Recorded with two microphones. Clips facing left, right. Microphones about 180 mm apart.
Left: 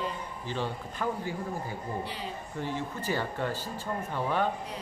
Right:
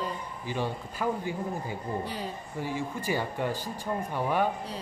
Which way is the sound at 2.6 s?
10° right (ahead or behind).